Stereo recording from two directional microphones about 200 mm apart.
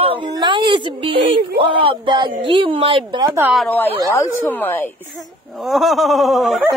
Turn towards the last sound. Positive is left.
turn(degrees=0)  # may be behind; listen again after turning